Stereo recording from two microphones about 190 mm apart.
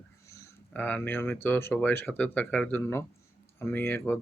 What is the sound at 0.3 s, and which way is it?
Speech, 10° left (ahead or behind).